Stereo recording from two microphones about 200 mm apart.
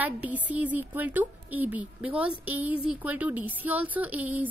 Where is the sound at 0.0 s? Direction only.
10° right (ahead or behind).